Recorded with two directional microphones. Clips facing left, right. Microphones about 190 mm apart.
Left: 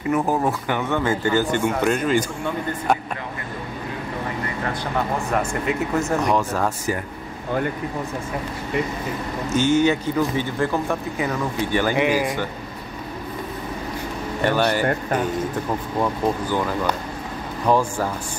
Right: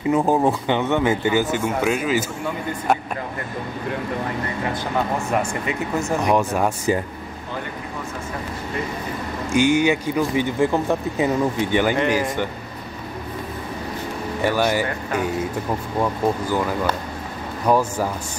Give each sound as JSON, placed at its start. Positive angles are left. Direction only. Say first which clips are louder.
{"t": 0.3, "sound": "speech", "louder": "right 3 dB", "side_deg": -25}
{"t": 1.5, "sound": "speech", "louder": "left 1 dB", "side_deg": -5}
{"t": 5.7, "sound": "speech", "louder": "left 1 dB", "side_deg": 0}
{"t": 6.3, "sound": "speech", "louder": "right 2 dB", "side_deg": -15}
{"t": 9.5, "sound": "speech", "louder": "right 1 dB", "side_deg": -15}
{"t": 11.9, "sound": "speech", "louder": "even", "side_deg": 10}
{"t": 14.4, "sound": "speech", "louder": "even", "side_deg": -10}
{"t": 16.0, "sound": "speech", "louder": "right 1 dB", "side_deg": -10}